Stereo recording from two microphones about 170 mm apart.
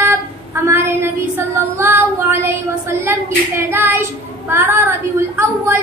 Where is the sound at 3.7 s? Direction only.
15° right (ahead or behind).